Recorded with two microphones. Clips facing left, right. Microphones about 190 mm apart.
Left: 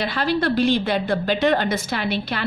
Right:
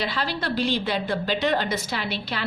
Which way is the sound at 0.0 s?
55° left (ahead or behind).